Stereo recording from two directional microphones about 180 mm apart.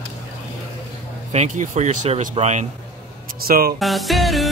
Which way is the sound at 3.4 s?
55° right (ahead or behind).